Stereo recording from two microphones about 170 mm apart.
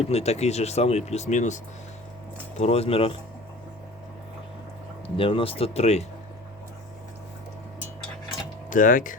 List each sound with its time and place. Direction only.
0.0 s speech: 40° left (ahead or behind)
2.6 s speech: 40° left (ahead or behind)
5.0 s speech: 30° left (ahead or behind)
8.7 s speech: 50° left (ahead or behind)